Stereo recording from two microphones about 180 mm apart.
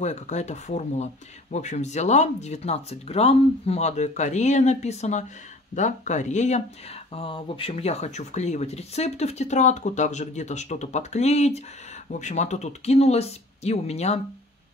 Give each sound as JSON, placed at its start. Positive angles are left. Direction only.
{"t": 0.0, "sound": "speech", "side_deg": 40}